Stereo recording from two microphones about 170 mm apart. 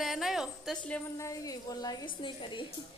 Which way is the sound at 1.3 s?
20° left (ahead or behind).